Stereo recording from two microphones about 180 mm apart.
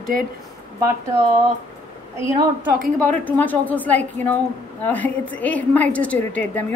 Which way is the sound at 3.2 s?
10° left (ahead or behind).